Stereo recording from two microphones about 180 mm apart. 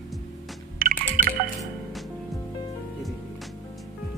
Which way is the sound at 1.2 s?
50° right (ahead or behind).